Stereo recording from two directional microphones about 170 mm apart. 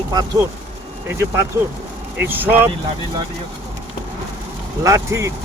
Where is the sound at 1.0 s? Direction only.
15° right (ahead or behind).